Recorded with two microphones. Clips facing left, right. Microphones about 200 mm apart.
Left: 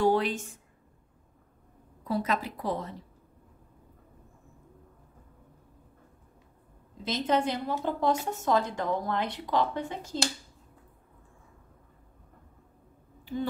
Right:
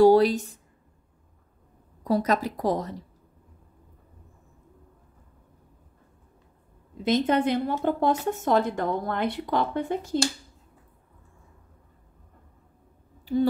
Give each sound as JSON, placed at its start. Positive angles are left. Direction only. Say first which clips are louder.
{"t": 0.0, "sound": "speech", "louder": "right 9 dB", "side_deg": -35}
{"t": 2.0, "sound": "speech", "louder": "right 6 dB", "side_deg": -40}
{"t": 7.1, "sound": "speech", "louder": "right 5 dB", "side_deg": -55}
{"t": 13.2, "sound": "a sound", "louder": "right 9 dB", "side_deg": -40}